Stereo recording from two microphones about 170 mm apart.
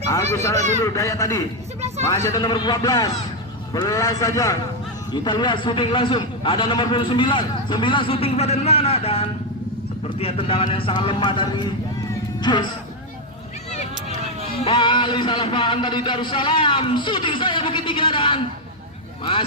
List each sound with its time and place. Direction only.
0.5 s a man's voice: 40° right (ahead or behind)
0.8 s a man's voice: 20° left (ahead or behind)
13.7 s a sound: 40° left (ahead or behind)
14.6 s a man's voice: 30° left (ahead or behind)